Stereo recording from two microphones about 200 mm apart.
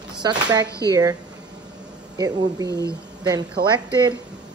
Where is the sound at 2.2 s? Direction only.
20° right (ahead or behind).